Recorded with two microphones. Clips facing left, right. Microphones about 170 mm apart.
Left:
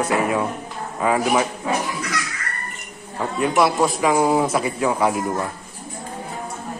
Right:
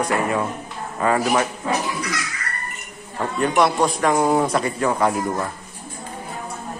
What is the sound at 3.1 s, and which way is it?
A man's voice, 5° left (ahead or behind).